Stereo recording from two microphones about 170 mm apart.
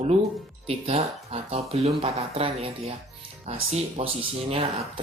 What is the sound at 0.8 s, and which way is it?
Speech, 35° right (ahead or behind).